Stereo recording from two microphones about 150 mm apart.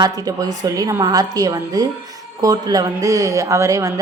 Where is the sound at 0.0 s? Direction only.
25° right (ahead or behind).